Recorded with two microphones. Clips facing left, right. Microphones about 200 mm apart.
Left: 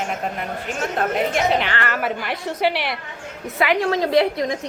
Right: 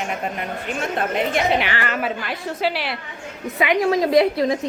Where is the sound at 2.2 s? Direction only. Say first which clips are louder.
Left 2 dB; 15° left (ahead or behind).